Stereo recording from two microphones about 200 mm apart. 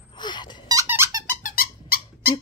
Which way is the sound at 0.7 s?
15° right (ahead or behind).